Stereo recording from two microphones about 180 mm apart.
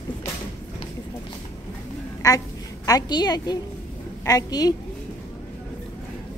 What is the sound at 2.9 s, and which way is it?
A woman's voice, 20° left (ahead or behind).